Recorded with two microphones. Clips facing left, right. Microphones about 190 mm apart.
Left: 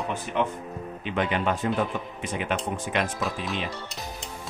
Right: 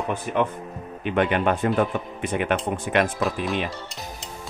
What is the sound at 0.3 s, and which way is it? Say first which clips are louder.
Speech: right 3 dB; 50° right (ahead or behind).